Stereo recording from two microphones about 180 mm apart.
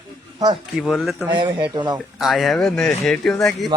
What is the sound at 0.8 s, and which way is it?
Speech, centre (ahead or behind).